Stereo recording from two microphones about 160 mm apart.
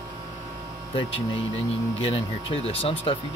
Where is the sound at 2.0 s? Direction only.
35° left (ahead or behind).